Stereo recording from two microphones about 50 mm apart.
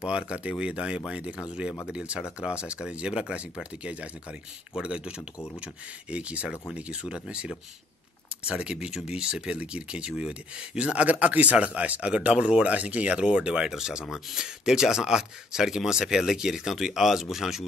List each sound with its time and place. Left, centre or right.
0.0 s speech: right